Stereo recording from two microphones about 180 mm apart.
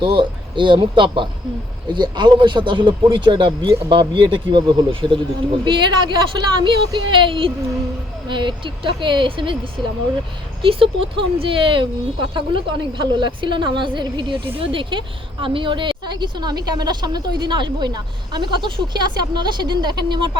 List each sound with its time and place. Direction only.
0.0 s a woman's voice: 25° right (ahead or behind)